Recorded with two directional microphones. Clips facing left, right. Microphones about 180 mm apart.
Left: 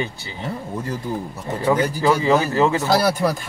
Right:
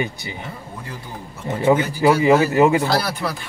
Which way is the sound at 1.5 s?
20° right (ahead or behind).